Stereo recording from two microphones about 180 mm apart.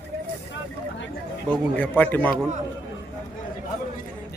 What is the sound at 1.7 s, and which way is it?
Speech, 10° left (ahead or behind).